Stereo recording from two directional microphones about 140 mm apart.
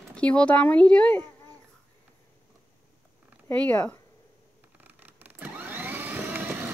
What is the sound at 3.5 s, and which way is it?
Speech, 10° left (ahead or behind).